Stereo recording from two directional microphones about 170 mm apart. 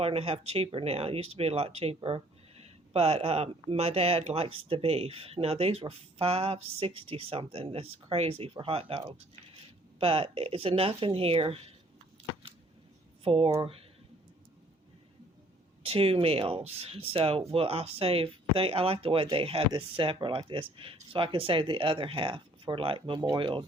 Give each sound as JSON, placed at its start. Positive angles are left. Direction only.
{"t": 0.0, "sound": "speech", "side_deg": -35}
{"t": 13.2, "sound": "speech", "side_deg": -35}
{"t": 15.8, "sound": "speech", "side_deg": -35}